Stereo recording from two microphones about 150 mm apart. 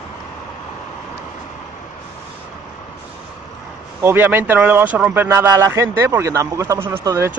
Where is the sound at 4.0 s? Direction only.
15° right (ahead or behind).